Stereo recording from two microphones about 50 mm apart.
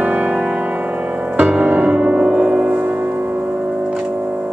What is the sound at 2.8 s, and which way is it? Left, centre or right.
Music, right.